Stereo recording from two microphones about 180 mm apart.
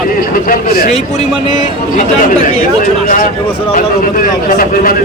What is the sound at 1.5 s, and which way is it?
A man's voice, 45° left (ahead or behind).